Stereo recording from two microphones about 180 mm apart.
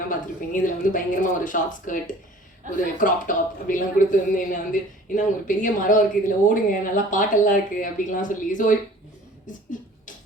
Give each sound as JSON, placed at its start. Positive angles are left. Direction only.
{"t": 0.1, "sound": "speech", "side_deg": 45}
{"t": 2.6, "sound": "a man's voice", "side_deg": -45}
{"t": 3.0, "sound": "speech", "side_deg": 45}